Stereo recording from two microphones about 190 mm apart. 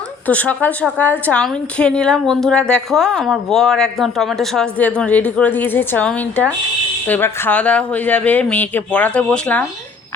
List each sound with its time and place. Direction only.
0.3 s a woman's voice: 10° left (ahead or behind)